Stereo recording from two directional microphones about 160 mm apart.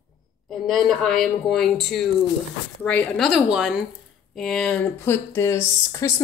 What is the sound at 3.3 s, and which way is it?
Speech, 5° right (ahead or behind).